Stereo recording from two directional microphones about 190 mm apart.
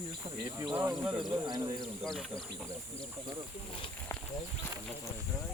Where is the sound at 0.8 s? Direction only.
15° right (ahead or behind).